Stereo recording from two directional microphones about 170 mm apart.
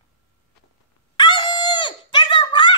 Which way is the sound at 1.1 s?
25° left (ahead or behind).